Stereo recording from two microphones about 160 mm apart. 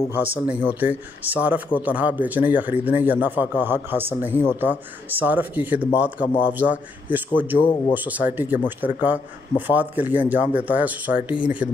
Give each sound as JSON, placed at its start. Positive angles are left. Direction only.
{"t": 0.1, "sound": "speech", "side_deg": -10}
{"t": 7.5, "sound": "speech", "side_deg": 30}
{"t": 7.9, "sound": "speech", "side_deg": -10}